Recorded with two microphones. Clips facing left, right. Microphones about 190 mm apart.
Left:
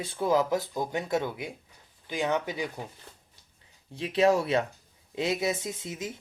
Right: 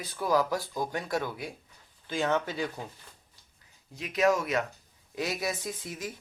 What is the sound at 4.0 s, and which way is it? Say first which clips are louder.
Speech: left 3 dB; 30° left (ahead or behind).